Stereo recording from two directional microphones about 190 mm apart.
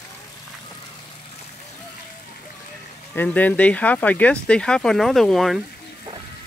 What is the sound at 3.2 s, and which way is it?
Speech, 10° left (ahead or behind).